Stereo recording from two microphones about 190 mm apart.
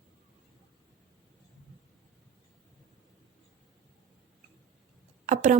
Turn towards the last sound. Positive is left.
turn(degrees=-40)  # may be behind; listen again after turning